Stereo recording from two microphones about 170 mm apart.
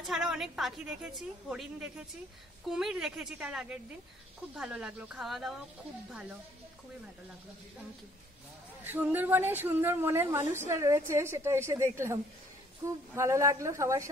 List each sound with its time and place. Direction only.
0.0 s a woman's voice: centre (ahead or behind)
8.8 s a woman's voice: 10° right (ahead or behind)